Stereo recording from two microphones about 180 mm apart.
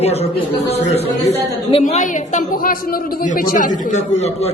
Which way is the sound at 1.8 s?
45° left (ahead or behind).